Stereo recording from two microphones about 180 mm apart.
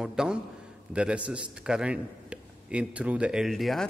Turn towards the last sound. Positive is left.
turn(degrees=0)  # may be behind; listen again after turning